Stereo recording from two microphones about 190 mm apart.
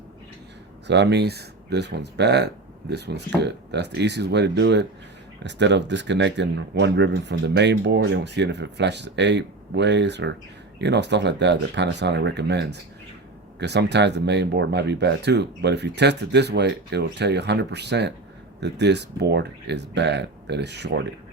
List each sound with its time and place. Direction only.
0.9 s speech: 65° right (ahead or behind)